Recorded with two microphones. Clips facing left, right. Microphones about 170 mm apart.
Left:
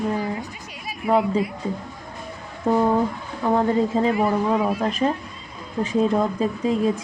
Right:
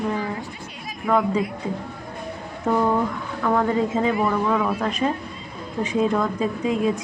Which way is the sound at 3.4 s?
25° left (ahead or behind).